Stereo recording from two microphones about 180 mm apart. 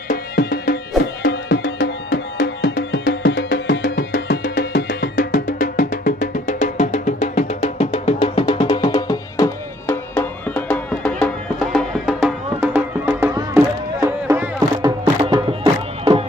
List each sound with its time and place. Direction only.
1.2 s music: 65° left (ahead or behind); by 16.3 s 30° right (ahead or behind)